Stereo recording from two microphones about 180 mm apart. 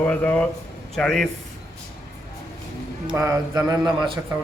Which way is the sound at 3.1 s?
20° right (ahead or behind).